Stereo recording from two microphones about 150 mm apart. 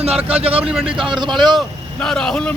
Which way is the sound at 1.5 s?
5° left (ahead or behind).